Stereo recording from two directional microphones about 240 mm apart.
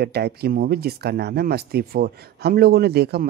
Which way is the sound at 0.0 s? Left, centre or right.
Right.